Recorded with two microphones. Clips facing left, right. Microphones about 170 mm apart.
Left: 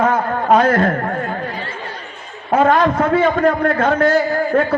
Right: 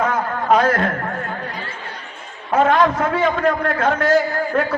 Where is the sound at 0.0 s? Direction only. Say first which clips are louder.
Left 4 dB; 45° left (ahead or behind).